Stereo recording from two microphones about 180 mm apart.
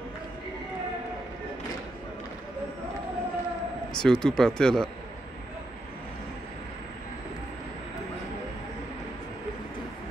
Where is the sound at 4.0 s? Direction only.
5° left (ahead or behind).